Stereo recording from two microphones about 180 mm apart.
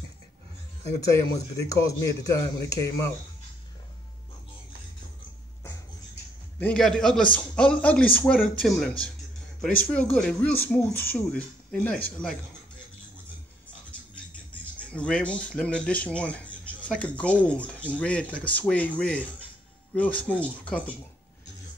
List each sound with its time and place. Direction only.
1.0 s speech: 20° left (ahead or behind)
6.6 s a man's voice: 5° left (ahead or behind)
14.8 s speech: 5° left (ahead or behind)